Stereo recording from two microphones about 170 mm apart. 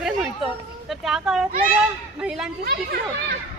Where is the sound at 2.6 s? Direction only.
65° right (ahead or behind).